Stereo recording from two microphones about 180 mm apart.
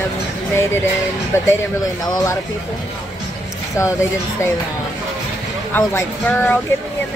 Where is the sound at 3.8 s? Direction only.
15° left (ahead or behind).